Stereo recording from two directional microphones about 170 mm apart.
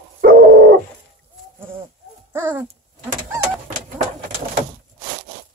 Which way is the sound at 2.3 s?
10° right (ahead or behind).